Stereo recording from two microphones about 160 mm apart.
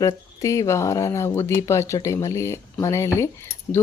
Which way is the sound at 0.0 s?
20° left (ahead or behind).